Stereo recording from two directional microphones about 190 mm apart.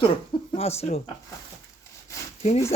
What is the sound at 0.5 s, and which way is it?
Speech, 35° left (ahead or behind).